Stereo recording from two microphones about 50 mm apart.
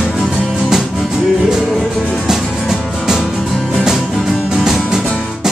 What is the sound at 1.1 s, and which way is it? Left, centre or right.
Music, centre.